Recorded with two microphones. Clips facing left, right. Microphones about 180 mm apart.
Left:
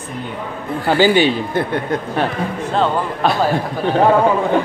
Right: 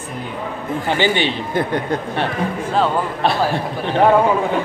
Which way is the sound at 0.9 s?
40° left (ahead or behind).